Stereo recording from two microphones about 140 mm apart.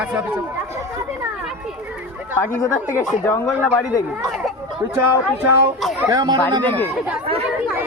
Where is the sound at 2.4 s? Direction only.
20° left (ahead or behind).